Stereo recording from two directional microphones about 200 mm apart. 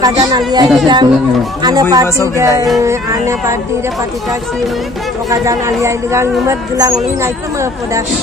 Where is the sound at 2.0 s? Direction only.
15° left (ahead or behind).